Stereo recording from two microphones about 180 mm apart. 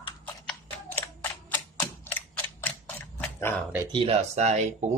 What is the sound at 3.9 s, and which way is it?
Speech, 30° right (ahead or behind).